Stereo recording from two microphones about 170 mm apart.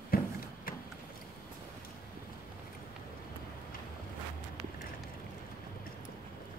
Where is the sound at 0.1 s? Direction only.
60° left (ahead or behind).